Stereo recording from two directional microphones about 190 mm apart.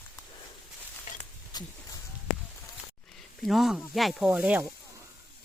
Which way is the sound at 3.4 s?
Centre (ahead or behind).